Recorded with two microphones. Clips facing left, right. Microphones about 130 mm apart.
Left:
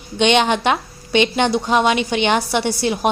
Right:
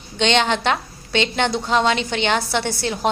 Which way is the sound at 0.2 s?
15° left (ahead or behind).